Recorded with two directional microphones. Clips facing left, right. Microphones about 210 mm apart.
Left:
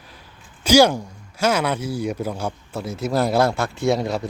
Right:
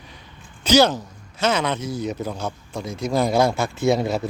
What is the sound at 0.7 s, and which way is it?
Speech, 10° left (ahead or behind).